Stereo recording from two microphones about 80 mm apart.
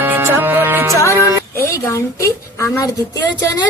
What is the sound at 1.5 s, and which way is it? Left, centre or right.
A woman's voice, left.